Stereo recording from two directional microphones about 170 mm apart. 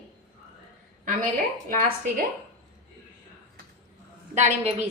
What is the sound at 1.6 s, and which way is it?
Speech, 55° right (ahead or behind).